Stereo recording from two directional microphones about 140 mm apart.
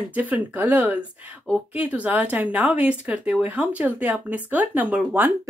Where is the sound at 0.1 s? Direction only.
10° right (ahead or behind).